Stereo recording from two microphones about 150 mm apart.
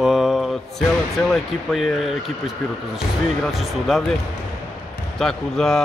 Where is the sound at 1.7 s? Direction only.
Centre (ahead or behind).